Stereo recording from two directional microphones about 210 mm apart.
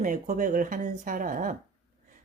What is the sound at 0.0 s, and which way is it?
Speech, 35° right (ahead or behind).